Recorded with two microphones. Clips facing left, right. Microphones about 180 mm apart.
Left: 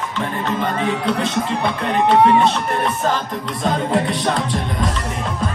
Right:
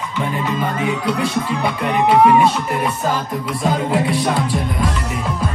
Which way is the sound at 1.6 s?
5° right (ahead or behind).